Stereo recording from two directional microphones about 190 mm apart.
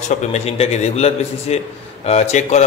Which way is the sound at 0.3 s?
35° left (ahead or behind).